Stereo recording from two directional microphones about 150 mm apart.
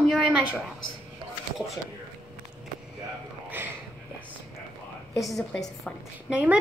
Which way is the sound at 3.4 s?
15° right (ahead or behind).